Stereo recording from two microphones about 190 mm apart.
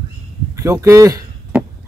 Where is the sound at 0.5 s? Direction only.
15° right (ahead or behind).